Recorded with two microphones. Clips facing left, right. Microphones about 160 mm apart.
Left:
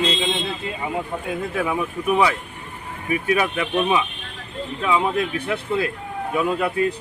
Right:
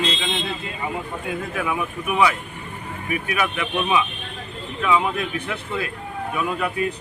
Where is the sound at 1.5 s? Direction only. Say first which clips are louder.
Left 3 dB; 35° left (ahead or behind).